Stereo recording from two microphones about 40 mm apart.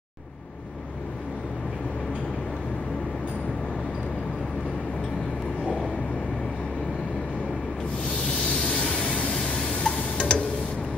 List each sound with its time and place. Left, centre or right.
8.5 s vehicle: left
9.6 s a sound: centre
10.1 s tick-tock: left